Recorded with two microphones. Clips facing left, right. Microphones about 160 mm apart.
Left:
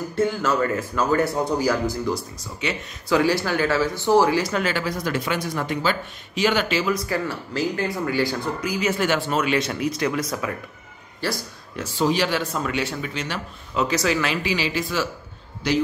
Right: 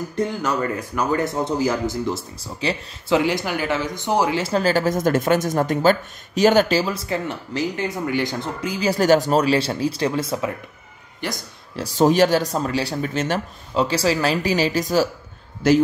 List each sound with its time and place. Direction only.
0.1 s speech: 20° right (ahead or behind)
3.2 s speech: 20° right (ahead or behind)
11.7 s speech: 40° right (ahead or behind)
13.7 s a man's voice: 30° right (ahead or behind); by 15.8 s 50° right (ahead or behind)